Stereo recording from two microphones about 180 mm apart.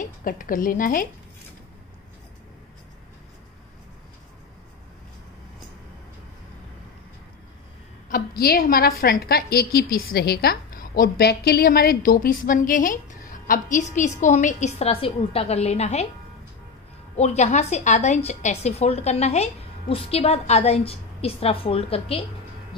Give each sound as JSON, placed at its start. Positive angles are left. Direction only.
{"t": 0.0, "sound": "speech", "side_deg": 50}
{"t": 8.1, "sound": "a woman's voice", "side_deg": 55}
{"t": 17.2, "sound": "a woman's voice", "side_deg": 40}